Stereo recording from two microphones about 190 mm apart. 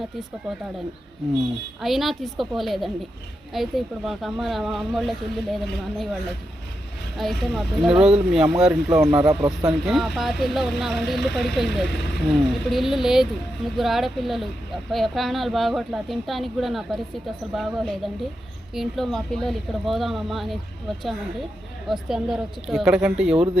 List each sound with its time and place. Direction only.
1.8 s speech: centre (ahead or behind)
7.2 s speech: centre (ahead or behind)
9.2 s speech: 20° right (ahead or behind)
9.6 s speech: centre (ahead or behind)